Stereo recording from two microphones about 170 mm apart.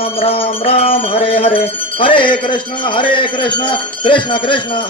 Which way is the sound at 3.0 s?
30° left (ahead or behind).